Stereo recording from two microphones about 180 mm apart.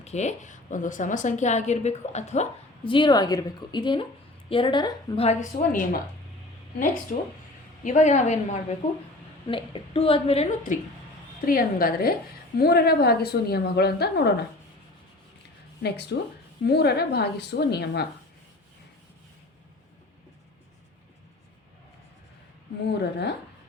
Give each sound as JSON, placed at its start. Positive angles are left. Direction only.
{"t": 0.0, "sound": "a woman's voice", "side_deg": 40}
{"t": 2.9, "sound": "a woman's voice", "side_deg": 25}
{"t": 7.9, "sound": "a woman's voice", "side_deg": 40}
{"t": 11.4, "sound": "a woman's voice", "side_deg": 55}
{"t": 15.8, "sound": "a woman's voice", "side_deg": 70}
{"t": 22.9, "sound": "speech", "side_deg": 70}